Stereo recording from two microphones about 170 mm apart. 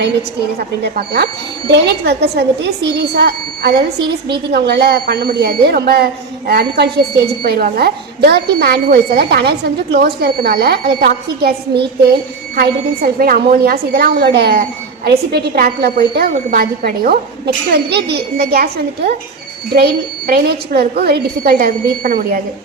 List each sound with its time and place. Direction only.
0.9 s a woman's voice: 70° right (ahead or behind)
12.5 s a woman's voice: 55° right (ahead or behind)